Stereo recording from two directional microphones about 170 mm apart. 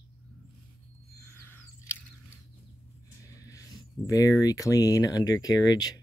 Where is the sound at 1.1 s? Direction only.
15° left (ahead or behind).